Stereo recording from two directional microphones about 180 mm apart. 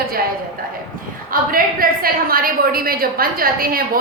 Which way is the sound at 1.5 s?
55° right (ahead or behind).